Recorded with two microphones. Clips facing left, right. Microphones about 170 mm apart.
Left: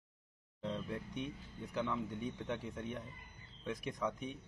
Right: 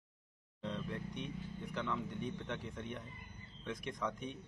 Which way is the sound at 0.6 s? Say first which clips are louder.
Left 1 dB; 5° left (ahead or behind).